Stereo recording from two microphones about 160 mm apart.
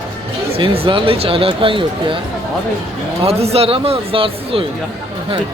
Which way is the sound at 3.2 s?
40° right (ahead or behind).